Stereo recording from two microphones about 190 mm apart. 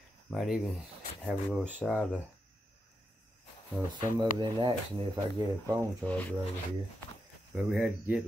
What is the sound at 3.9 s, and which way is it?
Speech, 25° right (ahead or behind).